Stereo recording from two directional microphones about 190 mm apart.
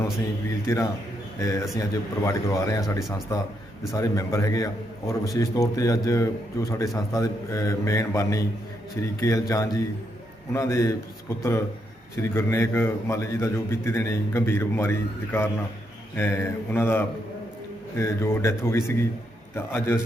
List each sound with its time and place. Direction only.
0.7 s a man's voice: 15° left (ahead or behind)
12.3 s a man's voice: 15° left (ahead or behind)